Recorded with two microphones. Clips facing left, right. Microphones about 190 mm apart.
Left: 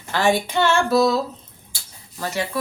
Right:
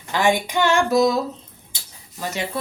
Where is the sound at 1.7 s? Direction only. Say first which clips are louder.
Left 1 dB; 15° right (ahead or behind).